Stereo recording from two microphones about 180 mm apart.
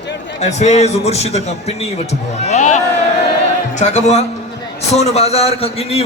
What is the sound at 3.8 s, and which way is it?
A man's voice, 40° left (ahead or behind).